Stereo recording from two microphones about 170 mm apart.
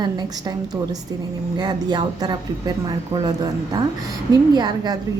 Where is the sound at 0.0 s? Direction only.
25° right (ahead or behind).